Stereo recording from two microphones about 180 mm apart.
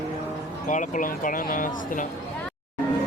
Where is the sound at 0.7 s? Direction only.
45° left (ahead or behind).